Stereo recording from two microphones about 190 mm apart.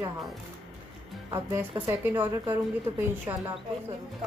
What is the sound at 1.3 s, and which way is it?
A woman's voice, 15° right (ahead or behind).